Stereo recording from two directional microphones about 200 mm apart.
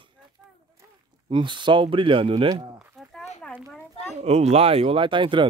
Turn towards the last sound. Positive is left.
turn(degrees=-25)  # may be behind; listen again after turning